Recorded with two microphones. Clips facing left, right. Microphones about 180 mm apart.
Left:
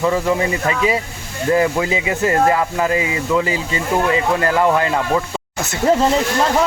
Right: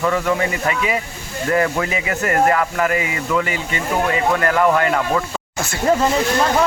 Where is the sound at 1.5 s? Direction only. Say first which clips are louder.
Left 3 dB; 20° left (ahead or behind).